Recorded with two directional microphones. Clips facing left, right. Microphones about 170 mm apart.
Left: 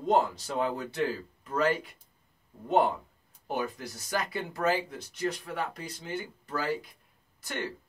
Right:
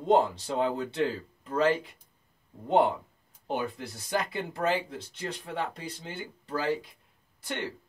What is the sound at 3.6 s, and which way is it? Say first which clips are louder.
Speech: left 2 dB; 25° right (ahead or behind).